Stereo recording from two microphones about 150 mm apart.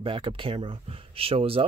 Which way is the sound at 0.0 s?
35° right (ahead or behind).